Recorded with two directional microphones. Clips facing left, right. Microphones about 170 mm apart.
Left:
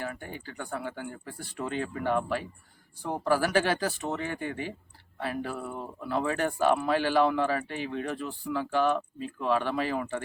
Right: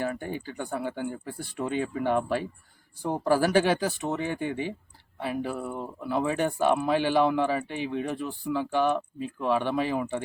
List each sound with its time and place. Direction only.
0.0 s speech: 25° right (ahead or behind)